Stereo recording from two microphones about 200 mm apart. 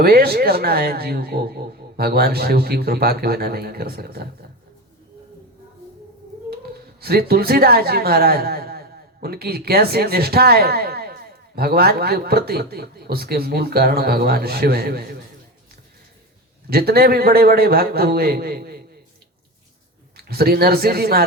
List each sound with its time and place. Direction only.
0.0 s a woman's voice: 50° right (ahead or behind)
7.0 s a woman's voice: 50° right (ahead or behind)
16.6 s a woman's voice: 50° right (ahead or behind)
20.1 s a woman's voice: 50° right (ahead or behind)